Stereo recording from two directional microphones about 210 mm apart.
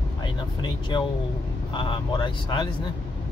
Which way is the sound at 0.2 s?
20° left (ahead or behind).